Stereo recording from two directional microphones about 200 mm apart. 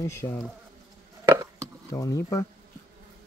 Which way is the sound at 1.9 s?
15° left (ahead or behind).